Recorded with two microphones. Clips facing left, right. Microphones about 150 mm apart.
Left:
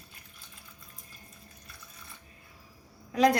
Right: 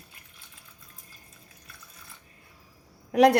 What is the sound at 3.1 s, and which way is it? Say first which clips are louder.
Speech: right 5 dB; 65° right (ahead or behind).